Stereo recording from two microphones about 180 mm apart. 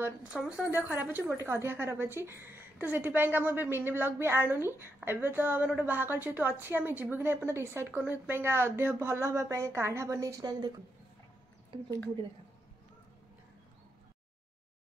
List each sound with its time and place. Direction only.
0.0 s speech: 5° right (ahead or behind)